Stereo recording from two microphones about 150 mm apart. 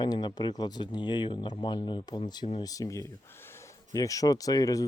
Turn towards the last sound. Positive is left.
turn(degrees=25)  # may be behind; listen again after turning